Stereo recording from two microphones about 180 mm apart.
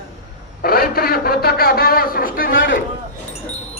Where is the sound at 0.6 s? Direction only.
55° left (ahead or behind).